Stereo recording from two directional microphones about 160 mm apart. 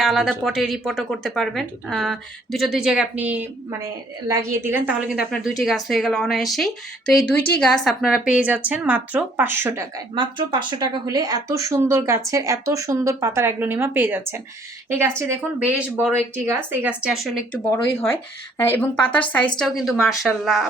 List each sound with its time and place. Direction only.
0.0 s speech: centre (ahead or behind)
10.2 s speech: 30° right (ahead or behind); by 17.4 s 5° right (ahead or behind)
17.5 s a woman's voice: 15° left (ahead or behind)
19.5 s speech: centre (ahead or behind)